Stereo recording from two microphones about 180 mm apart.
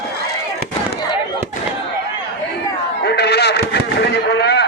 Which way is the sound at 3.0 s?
65° left (ahead or behind).